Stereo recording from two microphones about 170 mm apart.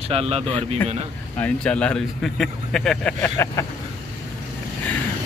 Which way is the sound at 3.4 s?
15° left (ahead or behind).